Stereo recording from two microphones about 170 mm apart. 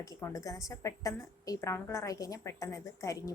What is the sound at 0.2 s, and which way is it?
A woman's voice, 20° left (ahead or behind).